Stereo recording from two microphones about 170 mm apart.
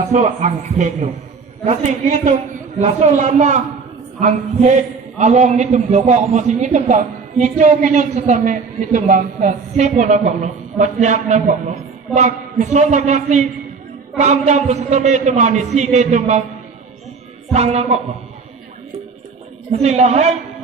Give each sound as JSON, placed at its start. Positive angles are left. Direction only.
{"t": 0.1, "sound": "a man's voice", "side_deg": -45}
{"t": 17.5, "sound": "a woman's voice", "side_deg": -40}
{"t": 19.7, "sound": "a woman's voice", "side_deg": -40}